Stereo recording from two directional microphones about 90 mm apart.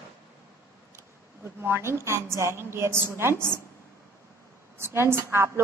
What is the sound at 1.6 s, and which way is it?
A woman's voice, 30° right (ahead or behind).